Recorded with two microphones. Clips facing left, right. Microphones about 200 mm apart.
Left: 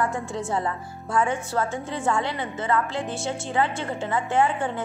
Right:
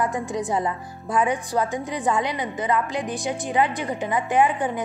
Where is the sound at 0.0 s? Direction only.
15° right (ahead or behind).